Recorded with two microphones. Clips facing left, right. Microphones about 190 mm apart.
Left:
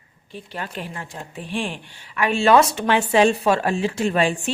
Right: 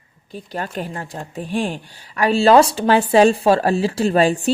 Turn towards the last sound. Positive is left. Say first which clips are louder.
# right 5 dB
turn(degrees=-35)  # may be behind; listen again after turning